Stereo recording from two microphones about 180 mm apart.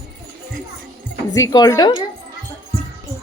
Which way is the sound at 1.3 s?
20° left (ahead or behind).